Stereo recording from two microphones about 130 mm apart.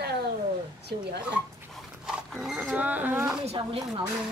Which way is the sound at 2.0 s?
5° right (ahead or behind).